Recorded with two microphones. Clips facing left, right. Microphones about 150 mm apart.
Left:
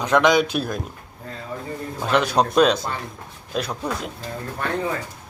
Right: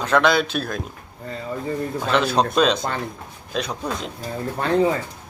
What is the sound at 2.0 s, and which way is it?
Speech, 10° left (ahead or behind).